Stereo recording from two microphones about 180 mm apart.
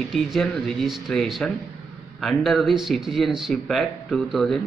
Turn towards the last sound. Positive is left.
turn(degrees=0)  # may be behind; listen again after turning